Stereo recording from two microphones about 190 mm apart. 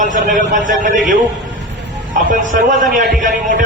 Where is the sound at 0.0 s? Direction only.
45° right (ahead or behind).